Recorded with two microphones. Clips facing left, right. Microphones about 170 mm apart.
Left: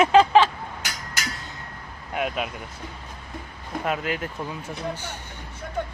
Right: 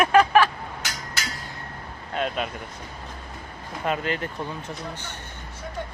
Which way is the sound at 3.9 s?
5° left (ahead or behind).